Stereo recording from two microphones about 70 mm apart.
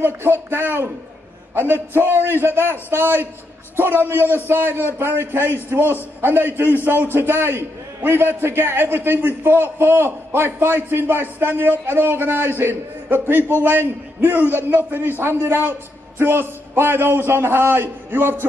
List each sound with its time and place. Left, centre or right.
0.0 s a man's voice: right